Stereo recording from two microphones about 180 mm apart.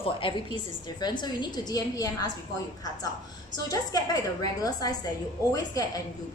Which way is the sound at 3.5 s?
20° left (ahead or behind).